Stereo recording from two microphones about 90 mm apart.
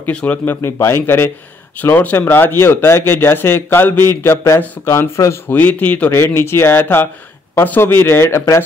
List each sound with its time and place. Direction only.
0.0 s speech: 15° left (ahead or behind)
0.6 s speech: 30° left (ahead or behind)
5.5 s speech: 15° left (ahead or behind)
6.1 s speech: 30° left (ahead or behind)